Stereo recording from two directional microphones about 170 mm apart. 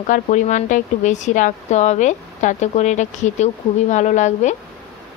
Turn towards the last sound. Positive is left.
turn(degrees=45)  # may be behind; listen again after turning